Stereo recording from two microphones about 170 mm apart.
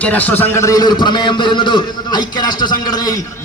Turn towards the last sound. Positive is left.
turn(degrees=25)  # may be behind; listen again after turning